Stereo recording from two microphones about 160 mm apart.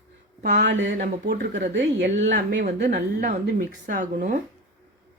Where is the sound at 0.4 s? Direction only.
85° right.